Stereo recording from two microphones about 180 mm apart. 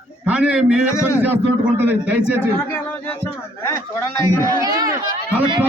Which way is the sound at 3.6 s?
15° left (ahead or behind).